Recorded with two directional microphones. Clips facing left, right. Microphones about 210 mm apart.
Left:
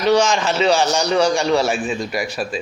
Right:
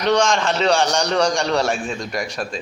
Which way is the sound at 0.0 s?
5° left (ahead or behind).